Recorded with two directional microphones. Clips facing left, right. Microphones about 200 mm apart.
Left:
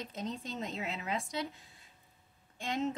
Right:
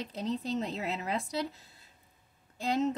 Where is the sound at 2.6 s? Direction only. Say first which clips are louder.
Right 5 dB; 35° right (ahead or behind).